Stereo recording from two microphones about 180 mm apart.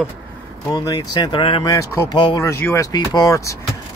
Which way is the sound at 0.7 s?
20° left (ahead or behind).